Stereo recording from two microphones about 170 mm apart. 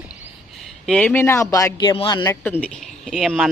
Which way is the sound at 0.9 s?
10° left (ahead or behind).